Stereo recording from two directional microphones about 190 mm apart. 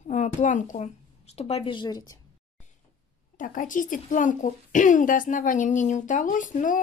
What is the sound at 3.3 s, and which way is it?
A woman's voice, 45° left (ahead or behind).